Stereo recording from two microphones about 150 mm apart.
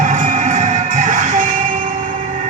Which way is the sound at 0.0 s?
55° right (ahead or behind).